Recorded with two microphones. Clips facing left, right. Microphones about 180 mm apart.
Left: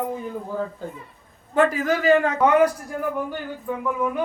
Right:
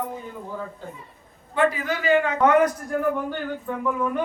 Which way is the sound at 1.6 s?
40° left (ahead or behind).